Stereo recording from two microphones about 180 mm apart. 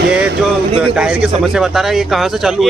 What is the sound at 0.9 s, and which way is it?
Speech, 5° right (ahead or behind).